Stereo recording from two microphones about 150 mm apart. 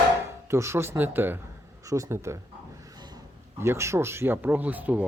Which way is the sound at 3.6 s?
15° right (ahead or behind).